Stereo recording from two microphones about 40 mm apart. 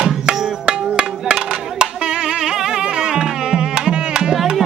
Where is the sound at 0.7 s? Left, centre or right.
Right.